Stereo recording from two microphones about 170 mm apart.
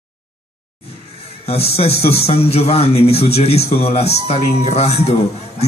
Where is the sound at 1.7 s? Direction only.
35° left (ahead or behind).